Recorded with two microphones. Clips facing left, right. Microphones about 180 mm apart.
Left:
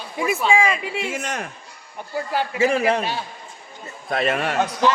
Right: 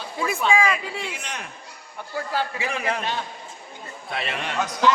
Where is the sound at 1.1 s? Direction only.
45° left (ahead or behind).